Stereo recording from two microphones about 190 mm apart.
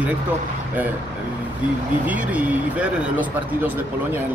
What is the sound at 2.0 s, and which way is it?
Speech, 5° right (ahead or behind).